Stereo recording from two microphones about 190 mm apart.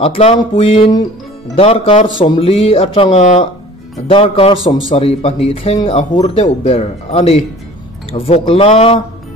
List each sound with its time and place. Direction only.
0.0 s speech: 30° left (ahead or behind)